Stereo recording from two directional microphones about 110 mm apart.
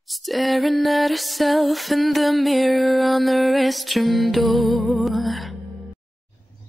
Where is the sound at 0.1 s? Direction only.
Centre (ahead or behind).